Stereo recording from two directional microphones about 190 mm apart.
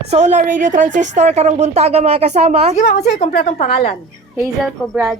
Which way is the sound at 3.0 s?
35° left (ahead or behind).